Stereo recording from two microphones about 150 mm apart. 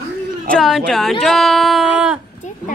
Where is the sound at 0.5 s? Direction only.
Centre (ahead or behind).